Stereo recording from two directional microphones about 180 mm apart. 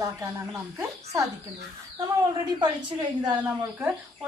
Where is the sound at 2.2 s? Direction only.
25° right (ahead or behind).